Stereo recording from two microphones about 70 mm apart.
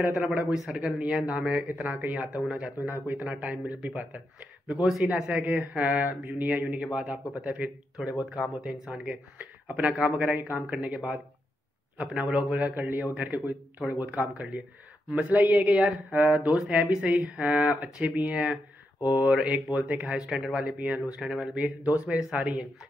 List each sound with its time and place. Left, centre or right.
0.2 s speech: right
4.8 s speech: centre
5.4 s speech: right
12.5 s speech: right
18.9 s mantra: left
19.2 s speech: centre
20.7 s speech: right
21.0 s speech: centre